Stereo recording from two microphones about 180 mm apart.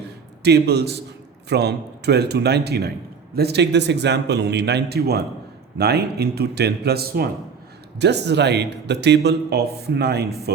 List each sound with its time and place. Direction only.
0.4 s a man's voice: 65° right (ahead or behind)